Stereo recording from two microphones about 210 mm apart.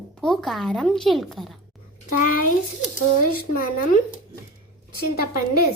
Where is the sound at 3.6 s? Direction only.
40° left (ahead or behind).